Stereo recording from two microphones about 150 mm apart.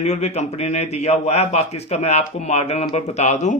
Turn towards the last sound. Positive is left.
turn(degrees=50)  # may be behind; listen again after turning